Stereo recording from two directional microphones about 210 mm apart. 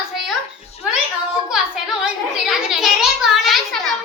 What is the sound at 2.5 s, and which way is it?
A child's voice, 5° right (ahead or behind).